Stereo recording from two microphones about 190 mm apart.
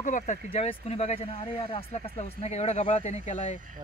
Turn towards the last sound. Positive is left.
turn(degrees=40)  # may be behind; listen again after turning